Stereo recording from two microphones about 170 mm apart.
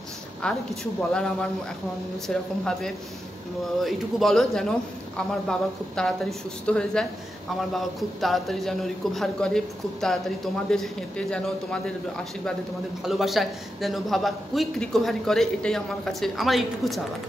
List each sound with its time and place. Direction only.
0.4 s a man's voice: 5° left (ahead or behind)
13.0 s a man's voice: centre (ahead or behind)